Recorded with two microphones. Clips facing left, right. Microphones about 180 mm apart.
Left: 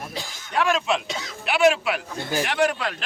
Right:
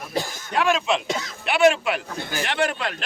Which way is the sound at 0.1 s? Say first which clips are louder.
Right 8 dB; 50° right (ahead or behind).